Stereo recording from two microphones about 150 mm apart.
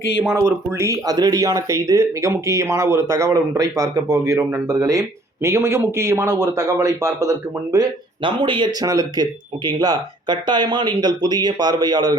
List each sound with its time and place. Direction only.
0.3 s speech: 20° right (ahead or behind)